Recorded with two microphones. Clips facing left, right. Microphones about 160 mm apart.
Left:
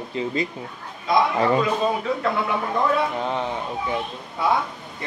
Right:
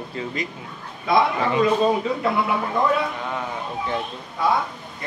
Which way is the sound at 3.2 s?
25° left (ahead or behind).